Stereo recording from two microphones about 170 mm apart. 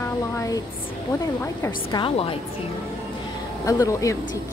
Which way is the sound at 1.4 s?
20° left (ahead or behind).